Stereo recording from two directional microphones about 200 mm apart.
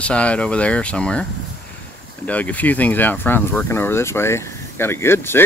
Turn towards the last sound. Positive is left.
turn(degrees=10)  # may be behind; listen again after turning